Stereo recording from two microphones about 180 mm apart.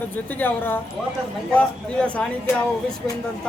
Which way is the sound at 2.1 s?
5° left (ahead or behind).